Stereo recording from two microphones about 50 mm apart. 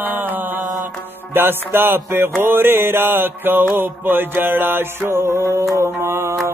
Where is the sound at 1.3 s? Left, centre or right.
Right.